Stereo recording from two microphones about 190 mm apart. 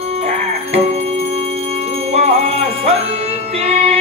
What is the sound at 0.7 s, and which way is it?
Music, 35° right (ahead or behind).